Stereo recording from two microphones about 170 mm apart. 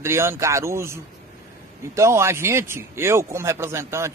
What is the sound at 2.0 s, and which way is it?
A man's voice, 15° right (ahead or behind).